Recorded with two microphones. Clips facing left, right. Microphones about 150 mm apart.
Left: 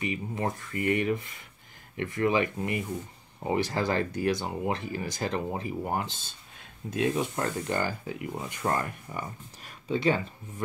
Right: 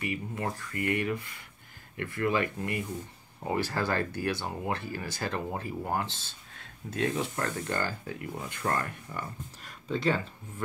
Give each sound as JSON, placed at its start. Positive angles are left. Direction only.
{"t": 0.0, "sound": "speech", "side_deg": 20}